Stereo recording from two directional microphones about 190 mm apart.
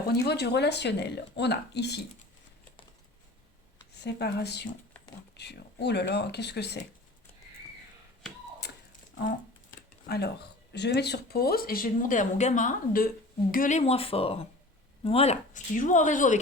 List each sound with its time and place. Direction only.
0.1 s speech: 60° left (ahead or behind)
4.0 s speech: 60° left (ahead or behind)
8.6 s a sound: 60° left (ahead or behind)
10.1 s speech: 60° left (ahead or behind); by 16.4 s 40° left (ahead or behind)